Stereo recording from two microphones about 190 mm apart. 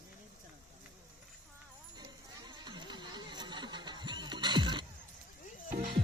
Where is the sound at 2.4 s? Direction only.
25° right (ahead or behind).